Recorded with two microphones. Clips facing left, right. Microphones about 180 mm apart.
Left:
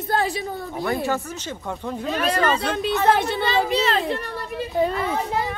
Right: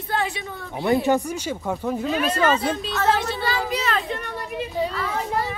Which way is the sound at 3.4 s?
25° left (ahead or behind).